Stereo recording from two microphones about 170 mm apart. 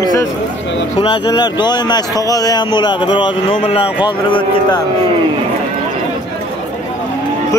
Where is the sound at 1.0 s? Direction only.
30° left (ahead or behind).